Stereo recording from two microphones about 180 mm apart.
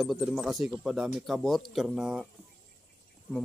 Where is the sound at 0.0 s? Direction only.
Centre (ahead or behind).